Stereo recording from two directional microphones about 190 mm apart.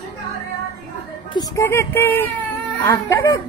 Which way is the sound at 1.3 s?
15° left (ahead or behind).